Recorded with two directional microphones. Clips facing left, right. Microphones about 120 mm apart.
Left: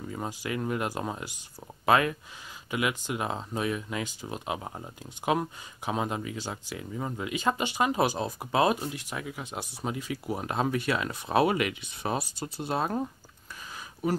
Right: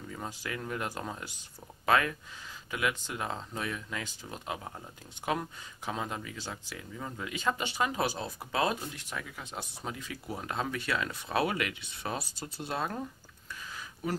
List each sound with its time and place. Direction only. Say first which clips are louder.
0.3 s speech: left 7 dB; 15° left (ahead or behind)
12.7 s speech: left 5 dB; 30° left (ahead or behind)